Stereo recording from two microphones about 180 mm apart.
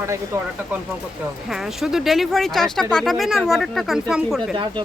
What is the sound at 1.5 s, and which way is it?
Speech, centre (ahead or behind).